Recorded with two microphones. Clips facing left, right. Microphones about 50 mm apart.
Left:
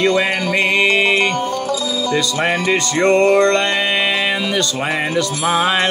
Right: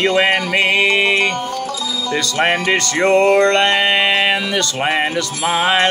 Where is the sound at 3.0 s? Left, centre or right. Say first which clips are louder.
Even; right.